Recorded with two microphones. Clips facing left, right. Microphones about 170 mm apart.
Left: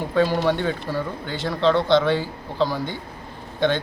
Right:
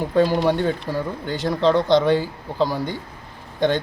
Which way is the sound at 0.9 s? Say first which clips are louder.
Right 1 dB; 15° right (ahead or behind).